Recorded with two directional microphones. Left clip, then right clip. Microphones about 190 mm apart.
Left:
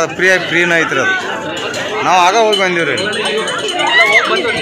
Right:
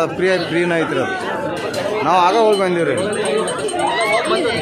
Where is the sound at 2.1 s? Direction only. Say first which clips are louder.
Left 3 dB; 10° right (ahead or behind).